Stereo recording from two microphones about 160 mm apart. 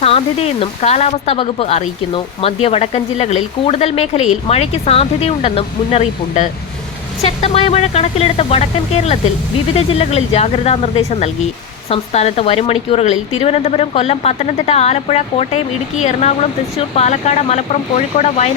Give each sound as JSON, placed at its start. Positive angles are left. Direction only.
{"t": 0.0, "sound": "speech", "side_deg": 40}